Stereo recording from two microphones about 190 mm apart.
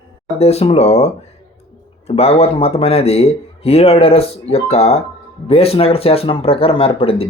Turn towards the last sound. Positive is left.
turn(degrees=30)  # may be behind; listen again after turning